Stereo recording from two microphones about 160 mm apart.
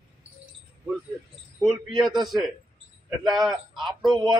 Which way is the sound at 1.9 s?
Centre (ahead or behind).